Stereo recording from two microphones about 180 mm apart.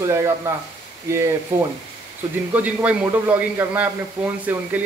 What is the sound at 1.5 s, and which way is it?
A man's voice, 15° right (ahead or behind).